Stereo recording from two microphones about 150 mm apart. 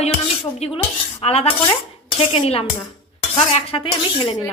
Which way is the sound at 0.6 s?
45° left (ahead or behind).